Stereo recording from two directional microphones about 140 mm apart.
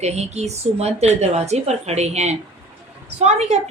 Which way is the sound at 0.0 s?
50° right (ahead or behind).